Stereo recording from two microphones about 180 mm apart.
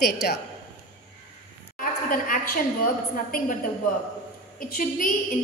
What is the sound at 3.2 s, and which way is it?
Speech, 50° left (ahead or behind).